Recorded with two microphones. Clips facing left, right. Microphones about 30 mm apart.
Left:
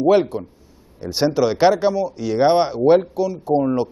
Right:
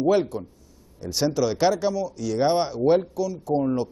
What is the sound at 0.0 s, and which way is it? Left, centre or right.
A man's voice, left.